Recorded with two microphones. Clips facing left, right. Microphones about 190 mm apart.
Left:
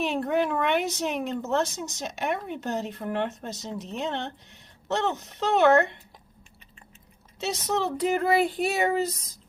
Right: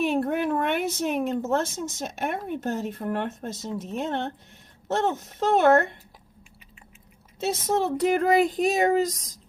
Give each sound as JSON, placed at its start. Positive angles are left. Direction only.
{"t": 0.0, "sound": "a woman's voice", "side_deg": -50}
{"t": 7.3, "sound": "speech", "side_deg": -50}